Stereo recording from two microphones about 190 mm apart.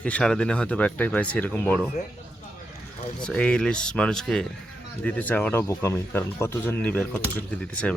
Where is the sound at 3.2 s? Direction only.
5° left (ahead or behind).